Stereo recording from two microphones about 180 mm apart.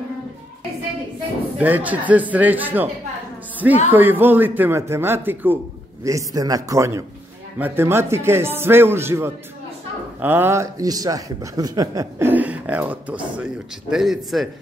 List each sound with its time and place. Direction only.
1.6 s a man's voice: 10° right (ahead or behind)
3.9 s a man's voice: 10° right (ahead or behind)